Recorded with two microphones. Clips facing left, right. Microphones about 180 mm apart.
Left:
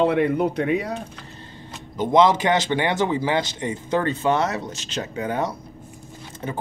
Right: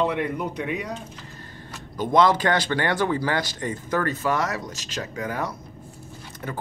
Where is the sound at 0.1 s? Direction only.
70° left (ahead or behind).